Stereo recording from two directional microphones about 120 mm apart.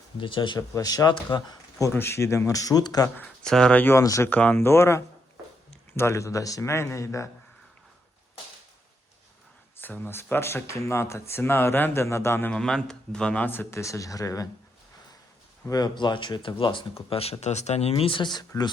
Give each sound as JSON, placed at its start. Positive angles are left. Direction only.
{"t": 0.2, "sound": "speech", "side_deg": 45}
{"t": 1.9, "sound": "speech", "side_deg": 20}
{"t": 3.2, "sound": "speech", "side_deg": 10}
{"t": 4.0, "sound": "speech", "side_deg": 25}
{"t": 4.3, "sound": "speech", "side_deg": 15}
{"t": 9.7, "sound": "speech", "side_deg": 15}
{"t": 15.7, "sound": "speech", "side_deg": 35}